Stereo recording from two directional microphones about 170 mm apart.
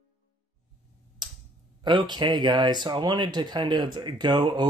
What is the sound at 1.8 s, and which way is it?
Speech, 25° right (ahead or behind).